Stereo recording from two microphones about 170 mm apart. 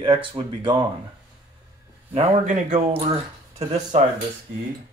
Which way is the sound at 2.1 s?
40° right (ahead or behind).